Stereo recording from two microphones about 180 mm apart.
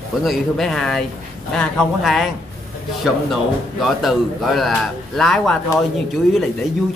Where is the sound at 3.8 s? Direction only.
Centre (ahead or behind).